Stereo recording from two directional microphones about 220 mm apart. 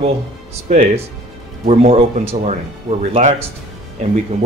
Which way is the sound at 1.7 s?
30° right (ahead or behind).